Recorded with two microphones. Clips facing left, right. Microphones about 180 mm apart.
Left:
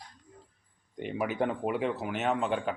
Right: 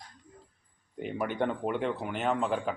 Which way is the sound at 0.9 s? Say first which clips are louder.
Even; centre (ahead or behind).